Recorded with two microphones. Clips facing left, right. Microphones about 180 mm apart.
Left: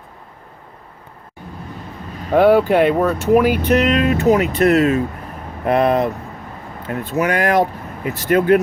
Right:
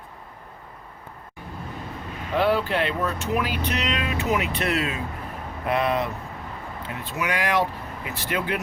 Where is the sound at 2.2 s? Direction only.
45° left (ahead or behind).